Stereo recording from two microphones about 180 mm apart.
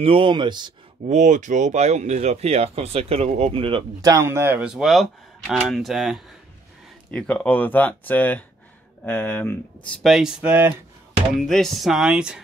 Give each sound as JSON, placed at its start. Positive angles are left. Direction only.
{"t": 0.0, "sound": "speech", "side_deg": -30}
{"t": 1.0, "sound": "speech", "side_deg": -40}